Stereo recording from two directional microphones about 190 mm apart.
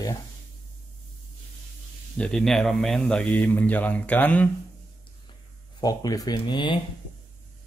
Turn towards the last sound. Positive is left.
turn(degrees=25)  # may be behind; listen again after turning